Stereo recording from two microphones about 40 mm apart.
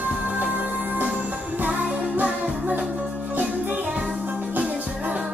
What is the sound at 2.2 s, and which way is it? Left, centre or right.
Music, right.